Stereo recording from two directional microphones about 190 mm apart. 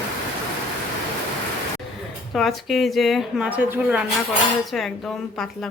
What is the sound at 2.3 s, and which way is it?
Speech, centre (ahead or behind).